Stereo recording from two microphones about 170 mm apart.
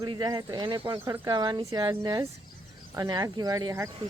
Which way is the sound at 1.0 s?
15° right (ahead or behind).